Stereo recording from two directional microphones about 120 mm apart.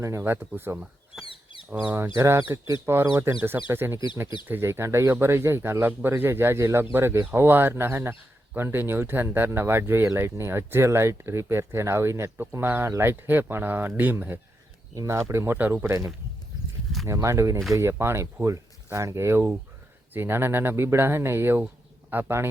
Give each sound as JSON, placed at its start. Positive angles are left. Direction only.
{"t": 0.0, "sound": "speech", "side_deg": -25}
{"t": 1.2, "sound": "a sound", "side_deg": 45}
{"t": 1.9, "sound": "speech", "side_deg": -20}